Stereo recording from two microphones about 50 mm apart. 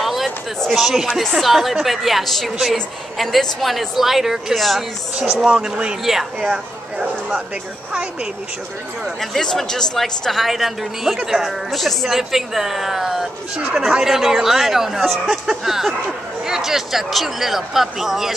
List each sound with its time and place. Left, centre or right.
0.0 s a sound: centre
0.7 s a woman's voice: centre
5.4 s speech: centre
9.0 s a woman's voice: centre